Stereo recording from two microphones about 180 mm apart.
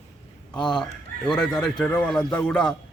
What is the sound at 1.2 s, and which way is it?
A man's voice, 5° left (ahead or behind).